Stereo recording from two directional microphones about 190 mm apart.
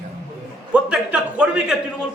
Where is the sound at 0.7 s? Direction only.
5° right (ahead or behind).